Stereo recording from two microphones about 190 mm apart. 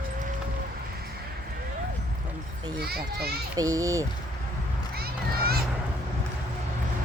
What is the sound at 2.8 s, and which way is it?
Speech, 55° right (ahead or behind).